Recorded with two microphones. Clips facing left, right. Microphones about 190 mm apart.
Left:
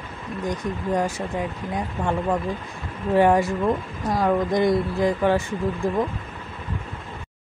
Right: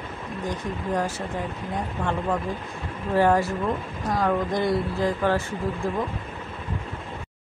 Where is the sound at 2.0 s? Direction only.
10° left (ahead or behind).